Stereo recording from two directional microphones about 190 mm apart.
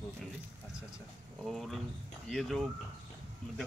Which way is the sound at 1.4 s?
Centre (ahead or behind).